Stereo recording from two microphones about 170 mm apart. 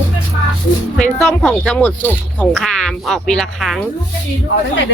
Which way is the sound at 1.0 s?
5° left (ahead or behind).